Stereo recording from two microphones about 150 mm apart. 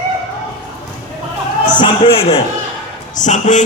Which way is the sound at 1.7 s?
35° left (ahead or behind).